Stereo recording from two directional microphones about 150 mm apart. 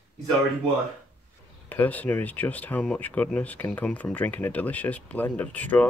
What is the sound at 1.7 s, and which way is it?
Speech, 10° left (ahead or behind).